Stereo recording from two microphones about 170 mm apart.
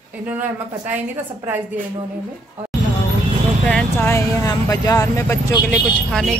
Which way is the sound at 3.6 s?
10° left (ahead or behind).